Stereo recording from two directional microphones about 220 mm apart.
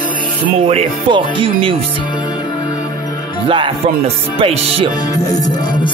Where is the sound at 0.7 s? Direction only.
25° right (ahead or behind).